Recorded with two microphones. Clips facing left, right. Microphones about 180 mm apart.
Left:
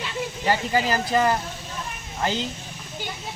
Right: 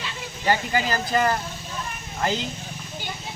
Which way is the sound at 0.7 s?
25° left (ahead or behind).